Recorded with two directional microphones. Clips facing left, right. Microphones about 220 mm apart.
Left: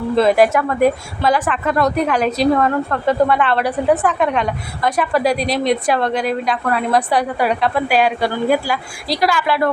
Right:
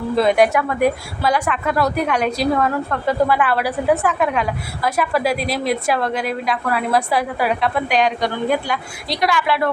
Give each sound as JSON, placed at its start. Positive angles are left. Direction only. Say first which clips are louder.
{"t": 0.2, "sound": "a woman's voice", "louder": "left 2 dB", "side_deg": 0}